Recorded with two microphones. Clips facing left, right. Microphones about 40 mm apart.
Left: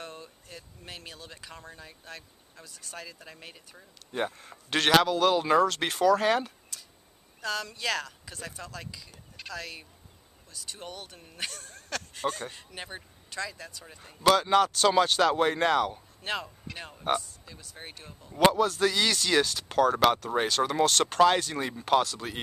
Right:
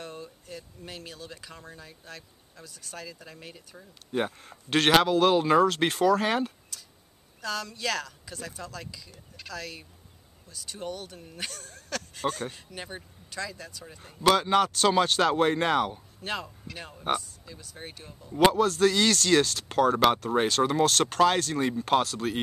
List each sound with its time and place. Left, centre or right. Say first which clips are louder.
0.0 s speech: right 2 dB; centre